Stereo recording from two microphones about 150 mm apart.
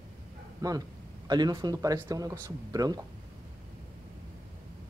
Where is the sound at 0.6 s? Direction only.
25° right (ahead or behind).